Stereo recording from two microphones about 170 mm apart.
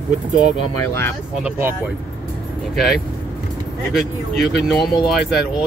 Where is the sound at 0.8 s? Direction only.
15° left (ahead or behind).